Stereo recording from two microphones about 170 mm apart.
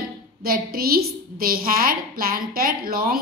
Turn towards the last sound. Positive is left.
turn(degrees=-60)  # may be behind; listen again after turning